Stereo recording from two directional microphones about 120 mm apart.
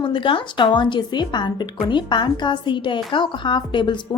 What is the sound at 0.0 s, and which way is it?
A woman's voice, 45° left (ahead or behind).